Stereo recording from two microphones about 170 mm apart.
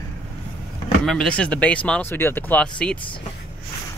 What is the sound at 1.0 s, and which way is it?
Speech, 5° left (ahead or behind).